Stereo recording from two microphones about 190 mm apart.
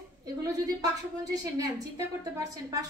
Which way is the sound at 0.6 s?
20° right (ahead or behind).